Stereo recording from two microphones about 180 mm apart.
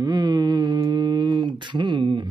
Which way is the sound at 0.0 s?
20° right (ahead or behind).